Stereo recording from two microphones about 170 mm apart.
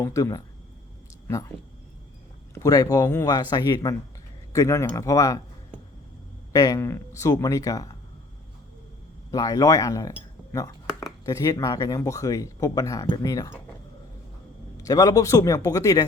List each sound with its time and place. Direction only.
0.0 s speech: 20° left (ahead or behind)
2.6 s speech: 20° left (ahead or behind)
6.5 s speech: 20° left (ahead or behind)
9.3 s speech: 20° left (ahead or behind)
14.8 s speech: 20° left (ahead or behind)